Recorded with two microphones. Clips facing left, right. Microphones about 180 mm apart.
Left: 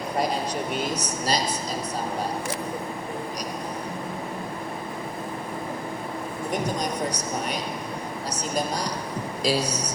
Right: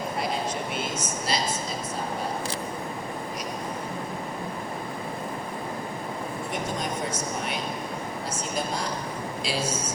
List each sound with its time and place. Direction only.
0.7 s speech: 40° left (ahead or behind)
6.5 s speech: 40° left (ahead or behind)
8.3 s a sound: 40° left (ahead or behind)
9.4 s speech: 40° left (ahead or behind)